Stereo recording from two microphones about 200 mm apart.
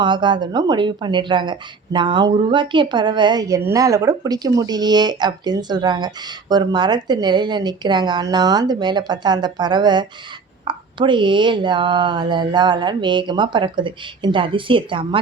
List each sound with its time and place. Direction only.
0.0 s speech: 25° right (ahead or behind)